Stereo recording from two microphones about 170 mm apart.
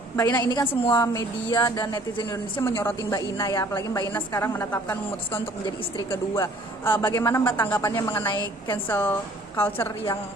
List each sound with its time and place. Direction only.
0.2 s a woman's voice: 25° left (ahead or behind)